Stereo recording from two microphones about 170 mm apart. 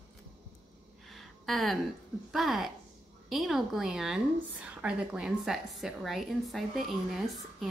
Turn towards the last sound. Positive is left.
turn(degrees=0)  # may be behind; listen again after turning